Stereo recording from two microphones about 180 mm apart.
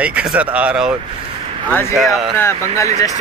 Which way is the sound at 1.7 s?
15° left (ahead or behind).